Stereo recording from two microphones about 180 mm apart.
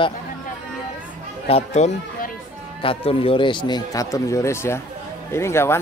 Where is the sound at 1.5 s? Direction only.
35° left (ahead or behind).